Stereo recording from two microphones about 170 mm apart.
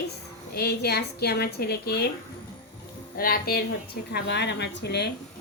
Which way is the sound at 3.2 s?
60° left (ahead or behind).